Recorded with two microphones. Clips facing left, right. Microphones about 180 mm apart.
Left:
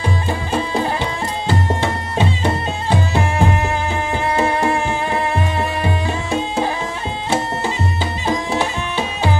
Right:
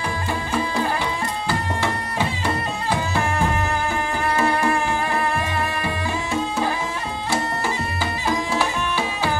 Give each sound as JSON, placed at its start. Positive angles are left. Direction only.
{"t": 1.5, "sound": "music", "side_deg": 25}
{"t": 8.5, "sound": "music", "side_deg": 20}